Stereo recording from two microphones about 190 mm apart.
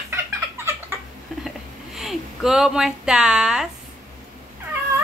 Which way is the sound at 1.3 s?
Centre (ahead or behind).